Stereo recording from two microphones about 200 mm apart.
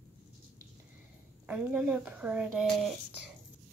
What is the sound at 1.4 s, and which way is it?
Speech, 10° right (ahead or behind).